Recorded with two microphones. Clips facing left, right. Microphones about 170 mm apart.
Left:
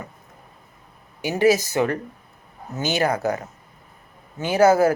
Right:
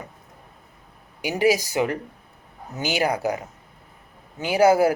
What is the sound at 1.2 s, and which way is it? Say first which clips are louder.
Speech: left 2 dB; 10° right (ahead or behind).